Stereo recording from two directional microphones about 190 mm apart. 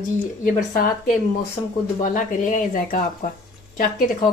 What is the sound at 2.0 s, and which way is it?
Speech, 45° left (ahead or behind).